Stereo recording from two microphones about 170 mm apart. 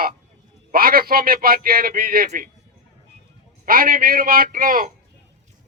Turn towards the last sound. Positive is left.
turn(degrees=-55)  # may be behind; listen again after turning